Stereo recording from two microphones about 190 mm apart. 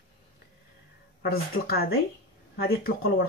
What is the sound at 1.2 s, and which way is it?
Speech, 55° left (ahead or behind).